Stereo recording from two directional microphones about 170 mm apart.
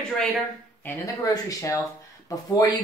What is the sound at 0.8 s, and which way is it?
Speech, 20° left (ahead or behind).